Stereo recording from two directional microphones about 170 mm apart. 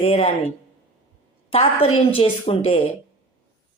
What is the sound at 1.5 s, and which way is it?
A woman's voice, 35° left (ahead or behind).